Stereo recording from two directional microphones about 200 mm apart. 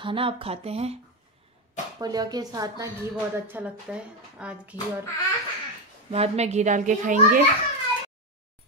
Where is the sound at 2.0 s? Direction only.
20° right (ahead or behind).